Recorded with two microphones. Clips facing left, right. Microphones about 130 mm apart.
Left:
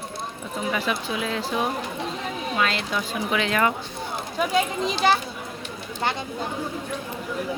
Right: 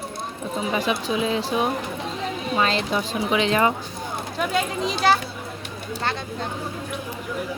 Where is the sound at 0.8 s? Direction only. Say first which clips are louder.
Right 6 dB; 20° right (ahead or behind).